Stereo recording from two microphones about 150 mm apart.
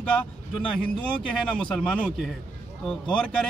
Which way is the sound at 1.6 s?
5° left (ahead or behind).